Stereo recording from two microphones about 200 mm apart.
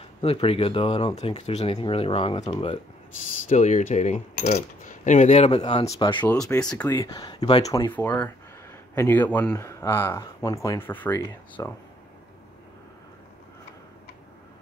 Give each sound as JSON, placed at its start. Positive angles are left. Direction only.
{"t": 0.2, "sound": "speech", "side_deg": 30}
{"t": 6.2, "sound": "speech", "side_deg": 5}
{"t": 6.9, "sound": "speech", "side_deg": 20}